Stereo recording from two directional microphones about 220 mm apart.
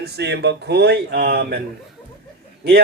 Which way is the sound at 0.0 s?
50° right (ahead or behind).